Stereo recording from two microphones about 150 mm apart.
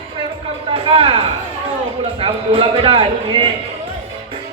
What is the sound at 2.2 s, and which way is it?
A man's voice, 40° right (ahead or behind).